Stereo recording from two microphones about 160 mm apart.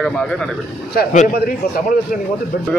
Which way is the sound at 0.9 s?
70° left (ahead or behind).